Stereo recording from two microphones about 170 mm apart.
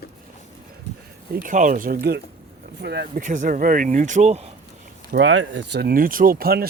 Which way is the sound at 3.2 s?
50° right (ahead or behind).